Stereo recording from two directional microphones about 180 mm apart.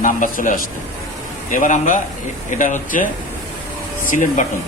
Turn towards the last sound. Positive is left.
turn(degrees=45)  # may be behind; listen again after turning